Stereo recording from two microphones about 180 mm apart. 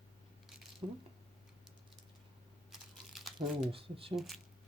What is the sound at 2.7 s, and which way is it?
Computer keyboard, centre (ahead or behind).